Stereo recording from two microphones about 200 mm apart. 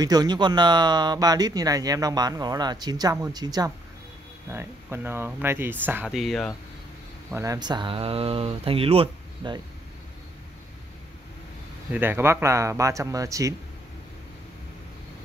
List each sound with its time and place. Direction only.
0.0 s speech: 20° right (ahead or behind); by 6.5 s centre (ahead or behind)
7.3 s speech: 20° right (ahead or behind)
11.9 s speech: 10° right (ahead or behind)